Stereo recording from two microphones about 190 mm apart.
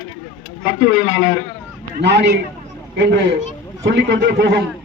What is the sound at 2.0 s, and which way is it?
A man's voice, 65° right (ahead or behind).